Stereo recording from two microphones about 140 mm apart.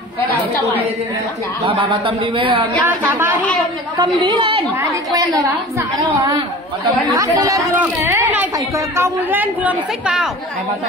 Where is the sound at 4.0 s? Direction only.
30° right (ahead or behind).